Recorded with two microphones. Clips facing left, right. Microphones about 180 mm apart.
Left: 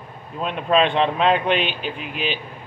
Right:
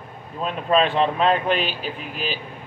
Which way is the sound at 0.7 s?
5° right (ahead or behind).